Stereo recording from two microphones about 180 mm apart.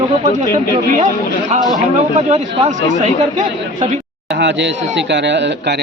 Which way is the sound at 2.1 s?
40° right (ahead or behind).